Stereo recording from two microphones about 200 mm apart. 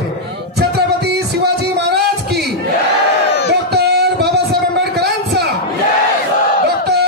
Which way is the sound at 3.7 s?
55° right (ahead or behind).